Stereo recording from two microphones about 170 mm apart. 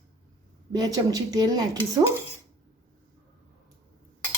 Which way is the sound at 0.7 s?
25° right (ahead or behind).